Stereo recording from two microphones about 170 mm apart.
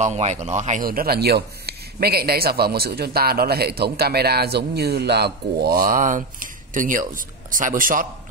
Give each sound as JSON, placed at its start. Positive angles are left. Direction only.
{"t": 0.0, "sound": "a man's voice", "side_deg": -40}